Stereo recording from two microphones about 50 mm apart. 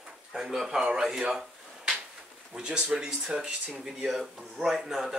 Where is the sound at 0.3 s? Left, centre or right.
Centre.